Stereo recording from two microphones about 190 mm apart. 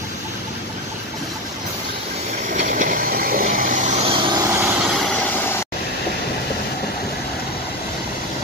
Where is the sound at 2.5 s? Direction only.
40° right (ahead or behind); by 4.5 s 20° right (ahead or behind).